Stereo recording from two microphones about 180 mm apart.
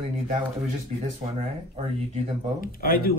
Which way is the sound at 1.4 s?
35° right (ahead or behind).